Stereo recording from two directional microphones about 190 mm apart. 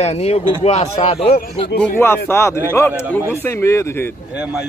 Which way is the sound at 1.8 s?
10° left (ahead or behind).